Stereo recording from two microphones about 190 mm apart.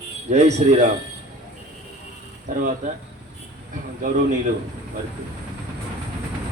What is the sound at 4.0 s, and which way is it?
Speech, 45° right (ahead or behind).